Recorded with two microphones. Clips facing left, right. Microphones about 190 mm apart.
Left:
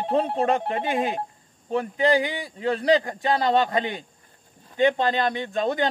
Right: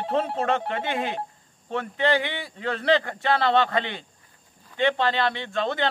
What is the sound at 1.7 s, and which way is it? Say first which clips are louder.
Speech: left 3 dB; 15° left (ahead or behind).